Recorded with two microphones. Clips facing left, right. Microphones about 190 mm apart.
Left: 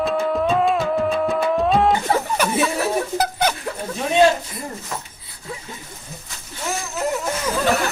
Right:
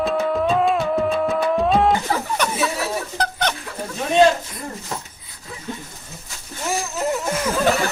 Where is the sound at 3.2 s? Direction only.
10° left (ahead or behind).